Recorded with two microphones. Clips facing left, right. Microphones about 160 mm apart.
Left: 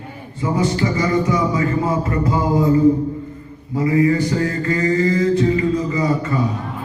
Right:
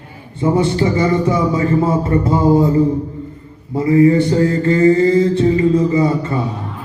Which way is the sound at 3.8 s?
30° right (ahead or behind).